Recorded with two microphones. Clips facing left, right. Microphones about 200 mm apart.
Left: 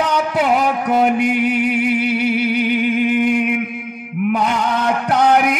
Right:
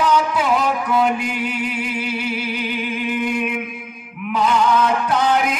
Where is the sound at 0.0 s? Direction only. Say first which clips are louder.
Left 1 dB; 65° left (ahead or behind).